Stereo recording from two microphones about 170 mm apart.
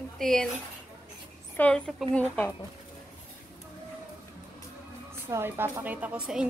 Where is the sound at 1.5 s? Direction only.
5° left (ahead or behind).